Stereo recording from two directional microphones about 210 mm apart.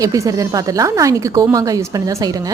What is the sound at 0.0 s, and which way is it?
A woman's voice, 15° right (ahead or behind).